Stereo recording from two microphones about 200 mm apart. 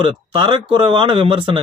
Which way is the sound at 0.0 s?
25° right (ahead or behind).